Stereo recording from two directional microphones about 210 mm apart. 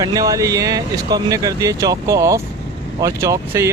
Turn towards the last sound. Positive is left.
turn(degrees=-15)  # may be behind; listen again after turning